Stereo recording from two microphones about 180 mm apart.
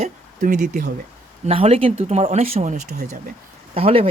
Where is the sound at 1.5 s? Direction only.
35° right (ahead or behind).